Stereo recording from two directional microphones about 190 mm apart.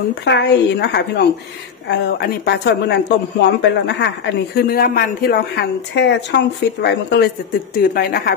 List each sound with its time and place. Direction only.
0.2 s speech: 65° left (ahead or behind)
4.6 s speech: 50° left (ahead or behind)
7.7 s speech: 50° left (ahead or behind)